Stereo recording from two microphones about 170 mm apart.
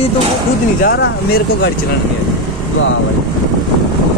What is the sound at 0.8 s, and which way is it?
Speech, 70° left (ahead or behind).